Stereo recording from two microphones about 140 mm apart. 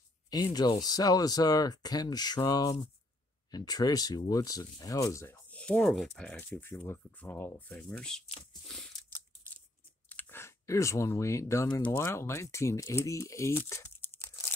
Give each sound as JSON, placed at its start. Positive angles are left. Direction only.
{"t": 0.3, "sound": "speech", "side_deg": 30}
{"t": 6.6, "sound": "speech", "side_deg": 15}
{"t": 10.0, "sound": "speech", "side_deg": 10}